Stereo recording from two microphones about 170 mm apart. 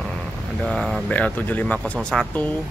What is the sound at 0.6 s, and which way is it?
Speech, centre (ahead or behind).